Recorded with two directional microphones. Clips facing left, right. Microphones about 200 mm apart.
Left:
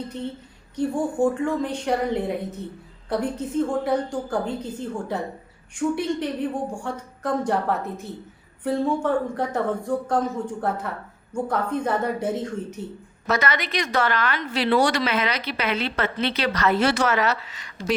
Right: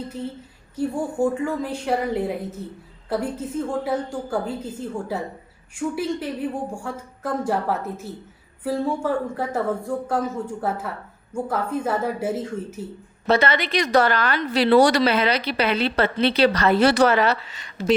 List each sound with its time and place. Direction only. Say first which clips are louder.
0.8 s a woman's voice: left 1 dB; 5° right (ahead or behind)
13.2 s a woman's voice: right 4 dB; 30° right (ahead or behind)